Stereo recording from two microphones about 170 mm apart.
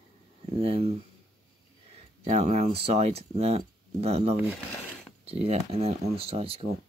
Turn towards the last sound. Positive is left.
turn(degrees=-35)  # may be behind; listen again after turning